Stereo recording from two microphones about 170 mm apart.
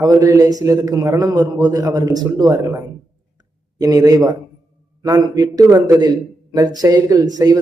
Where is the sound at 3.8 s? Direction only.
20° right (ahead or behind).